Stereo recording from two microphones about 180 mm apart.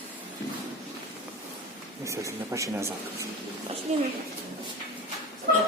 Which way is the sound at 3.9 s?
40° right (ahead or behind).